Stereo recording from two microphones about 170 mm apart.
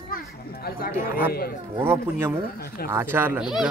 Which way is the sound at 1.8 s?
15° right (ahead or behind).